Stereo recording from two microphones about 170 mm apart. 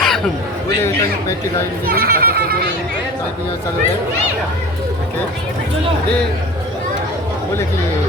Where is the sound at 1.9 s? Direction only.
60° right (ahead or behind).